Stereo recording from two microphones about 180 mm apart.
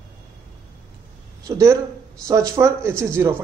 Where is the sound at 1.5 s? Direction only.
20° right (ahead or behind).